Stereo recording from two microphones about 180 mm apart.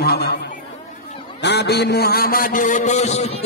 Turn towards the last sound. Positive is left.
turn(degrees=40)  # may be behind; listen again after turning